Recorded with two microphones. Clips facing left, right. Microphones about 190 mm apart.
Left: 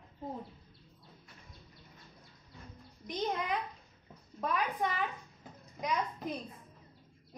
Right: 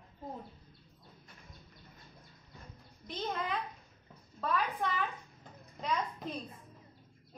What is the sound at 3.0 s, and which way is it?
A woman's voice, 15° left (ahead or behind).